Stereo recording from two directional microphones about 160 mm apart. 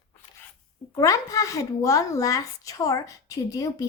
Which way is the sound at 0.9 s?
20° left (ahead or behind).